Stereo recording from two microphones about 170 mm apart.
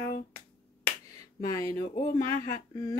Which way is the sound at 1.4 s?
20° left (ahead or behind).